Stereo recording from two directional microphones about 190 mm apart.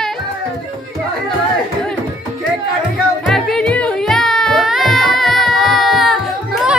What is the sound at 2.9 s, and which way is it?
Music, centre (ahead or behind).